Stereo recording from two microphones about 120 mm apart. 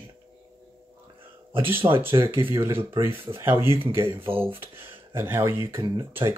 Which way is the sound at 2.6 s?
20° right (ahead or behind).